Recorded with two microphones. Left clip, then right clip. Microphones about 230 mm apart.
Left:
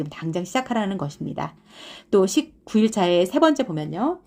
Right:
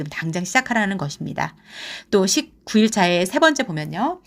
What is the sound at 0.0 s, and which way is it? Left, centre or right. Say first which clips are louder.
Speech: right 1 dB; right.